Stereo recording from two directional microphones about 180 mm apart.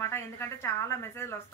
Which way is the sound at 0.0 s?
15° left (ahead or behind).